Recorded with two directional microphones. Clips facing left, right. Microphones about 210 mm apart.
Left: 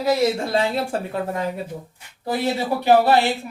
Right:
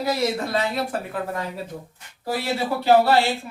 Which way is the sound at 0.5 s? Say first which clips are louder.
Left 3 dB; 30° left (ahead or behind).